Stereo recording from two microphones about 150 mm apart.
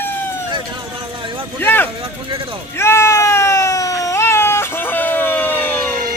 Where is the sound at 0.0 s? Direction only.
15° left (ahead or behind).